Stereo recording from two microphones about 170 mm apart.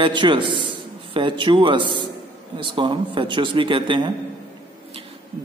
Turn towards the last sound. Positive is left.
turn(degrees=-30)  # may be behind; listen again after turning